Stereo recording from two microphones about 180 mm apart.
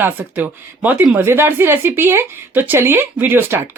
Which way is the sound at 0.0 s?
10° right (ahead or behind).